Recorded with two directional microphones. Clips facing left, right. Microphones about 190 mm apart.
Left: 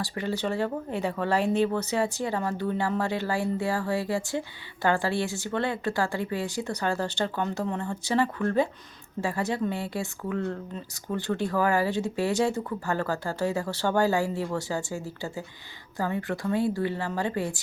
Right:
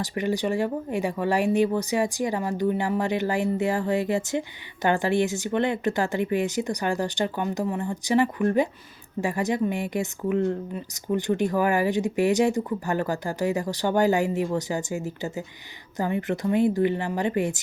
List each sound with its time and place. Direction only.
0.0 s a woman's voice: 20° right (ahead or behind)